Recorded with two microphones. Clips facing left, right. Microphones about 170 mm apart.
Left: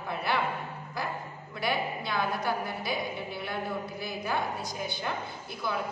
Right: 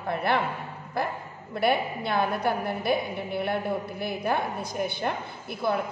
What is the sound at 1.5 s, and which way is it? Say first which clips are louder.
A woman's voice: right 6 dB; 55° right (ahead or behind).